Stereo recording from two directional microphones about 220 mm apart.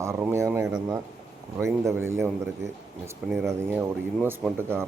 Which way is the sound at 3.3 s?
Centre (ahead or behind).